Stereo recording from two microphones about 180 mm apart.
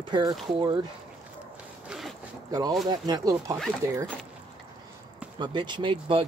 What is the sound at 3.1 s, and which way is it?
Speech, 20° right (ahead or behind).